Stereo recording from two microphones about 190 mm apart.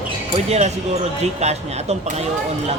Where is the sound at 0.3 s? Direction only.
35° right (ahead or behind).